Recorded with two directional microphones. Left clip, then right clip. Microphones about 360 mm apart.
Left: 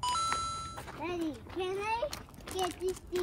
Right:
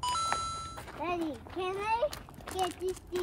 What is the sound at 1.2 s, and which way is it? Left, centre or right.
A child's voice, centre.